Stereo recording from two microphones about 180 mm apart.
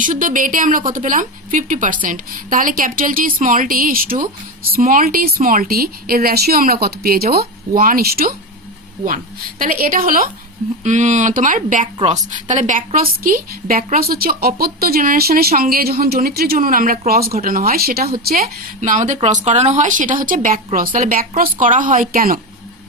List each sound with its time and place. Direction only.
0.0 s a woman's voice: 45° right (ahead or behind)
18.8 s a woman's voice: 45° right (ahead or behind)